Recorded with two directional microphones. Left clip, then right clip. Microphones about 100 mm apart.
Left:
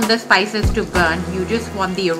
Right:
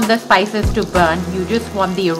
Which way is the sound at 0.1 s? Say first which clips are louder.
Right 2 dB; 80° right.